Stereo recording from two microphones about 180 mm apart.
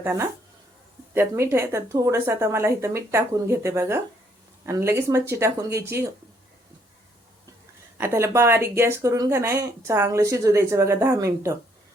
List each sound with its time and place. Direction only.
0.0 s speech: 15° right (ahead or behind)
7.9 s speech: 15° right (ahead or behind)